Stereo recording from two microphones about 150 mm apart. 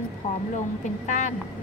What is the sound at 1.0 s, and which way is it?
Speech, 50° left (ahead or behind).